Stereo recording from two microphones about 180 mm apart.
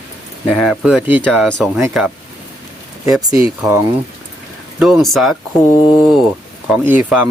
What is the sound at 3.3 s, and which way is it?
Speech, 15° right (ahead or behind).